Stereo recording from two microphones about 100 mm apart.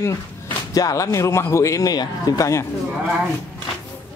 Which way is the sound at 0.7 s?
35° left (ahead or behind).